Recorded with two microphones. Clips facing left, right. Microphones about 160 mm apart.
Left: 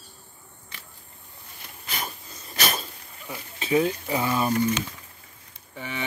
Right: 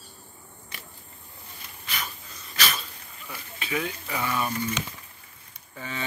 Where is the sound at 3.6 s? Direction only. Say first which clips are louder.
Left 8 dB; 30° left (ahead or behind).